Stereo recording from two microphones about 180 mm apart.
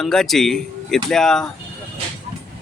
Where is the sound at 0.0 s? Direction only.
Centre (ahead or behind).